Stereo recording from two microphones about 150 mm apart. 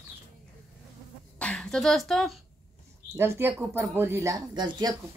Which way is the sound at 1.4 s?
5° left (ahead or behind).